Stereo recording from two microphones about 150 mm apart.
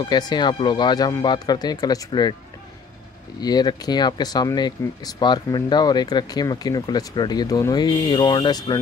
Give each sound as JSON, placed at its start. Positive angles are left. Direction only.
{"t": 0.0, "sound": "speech", "side_deg": 30}
{"t": 3.3, "sound": "speech", "side_deg": 25}